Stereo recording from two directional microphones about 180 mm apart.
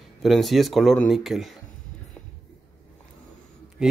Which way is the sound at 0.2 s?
Centre (ahead or behind).